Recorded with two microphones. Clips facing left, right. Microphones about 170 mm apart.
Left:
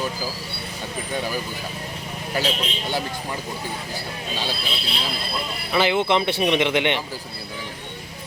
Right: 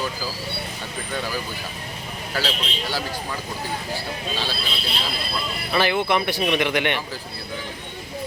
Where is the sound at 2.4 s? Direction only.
20° left (ahead or behind).